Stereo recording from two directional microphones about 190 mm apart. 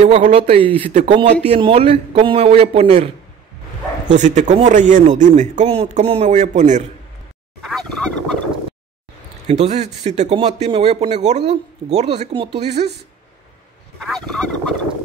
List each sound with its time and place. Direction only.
0.0 s speech: 35° right (ahead or behind)
4.1 s speech: 40° right (ahead or behind)
7.6 s fowl: centre (ahead or behind)
9.5 s speech: 35° right (ahead or behind)
13.9 s fowl: centre (ahead or behind)